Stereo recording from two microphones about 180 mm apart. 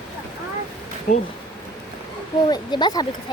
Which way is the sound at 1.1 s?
45° left (ahead or behind).